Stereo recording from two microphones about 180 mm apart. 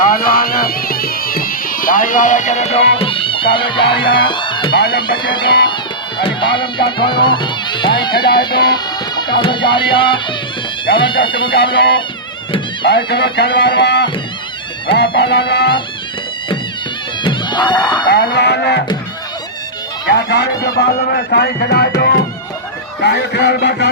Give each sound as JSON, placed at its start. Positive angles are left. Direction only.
{"t": 0.0, "sound": "music", "side_deg": 50}
{"t": 4.7, "sound": "speech", "side_deg": 65}
{"t": 4.9, "sound": "speech", "side_deg": 25}
{"t": 11.5, "sound": "speech", "side_deg": 60}
{"t": 13.1, "sound": "speech", "side_deg": 65}
{"t": 17.2, "sound": "music", "side_deg": 25}
{"t": 18.1, "sound": "music", "side_deg": 65}
{"t": 20.1, "sound": "music", "side_deg": 70}
{"t": 20.7, "sound": "speech", "side_deg": 60}
{"t": 23.0, "sound": "music", "side_deg": 70}